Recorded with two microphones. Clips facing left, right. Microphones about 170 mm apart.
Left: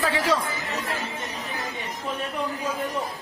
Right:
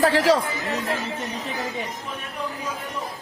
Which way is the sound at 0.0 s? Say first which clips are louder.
Right 6 dB; 75° right (ahead or behind).